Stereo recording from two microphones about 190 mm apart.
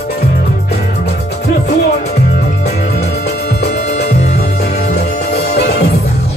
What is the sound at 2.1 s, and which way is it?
Music, 50° left (ahead or behind).